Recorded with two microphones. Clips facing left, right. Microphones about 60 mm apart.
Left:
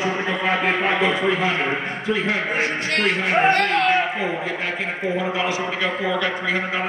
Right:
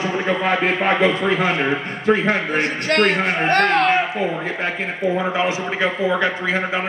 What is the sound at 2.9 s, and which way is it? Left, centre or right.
A man's voice, right.